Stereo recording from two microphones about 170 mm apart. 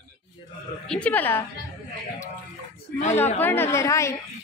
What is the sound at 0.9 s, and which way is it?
Speech, 10° left (ahead or behind).